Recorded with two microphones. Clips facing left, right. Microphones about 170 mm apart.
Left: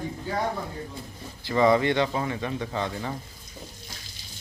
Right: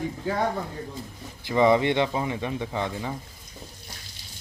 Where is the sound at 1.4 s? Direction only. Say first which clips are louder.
Right 1 dB; 20° right (ahead or behind).